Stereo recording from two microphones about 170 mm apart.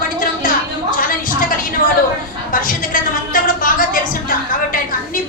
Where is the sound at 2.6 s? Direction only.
55° left (ahead or behind).